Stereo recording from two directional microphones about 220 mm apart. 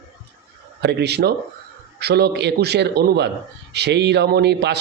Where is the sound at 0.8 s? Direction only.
50° right (ahead or behind).